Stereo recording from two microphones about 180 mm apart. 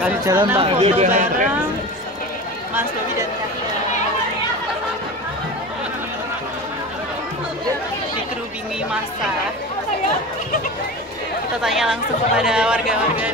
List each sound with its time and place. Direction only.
0.2 s speech: 20° right (ahead or behind); by 1.5 s 45° right (ahead or behind)
11.6 s speech: centre (ahead or behind)